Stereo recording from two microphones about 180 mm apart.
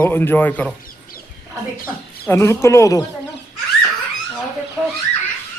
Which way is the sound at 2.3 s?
15° left (ahead or behind).